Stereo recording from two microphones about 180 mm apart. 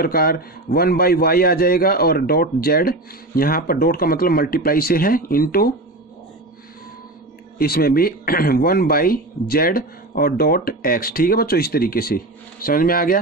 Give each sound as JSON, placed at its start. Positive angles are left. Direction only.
{"t": 0.0, "sound": "a man's voice", "side_deg": 55}
{"t": 7.5, "sound": "a man's voice", "side_deg": 55}